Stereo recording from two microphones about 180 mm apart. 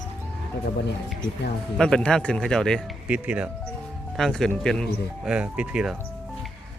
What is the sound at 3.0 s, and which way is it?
Speech, 5° right (ahead or behind).